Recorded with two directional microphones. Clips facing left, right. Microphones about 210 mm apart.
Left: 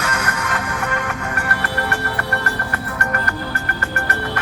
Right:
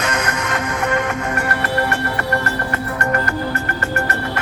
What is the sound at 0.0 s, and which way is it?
Music, 20° right (ahead or behind).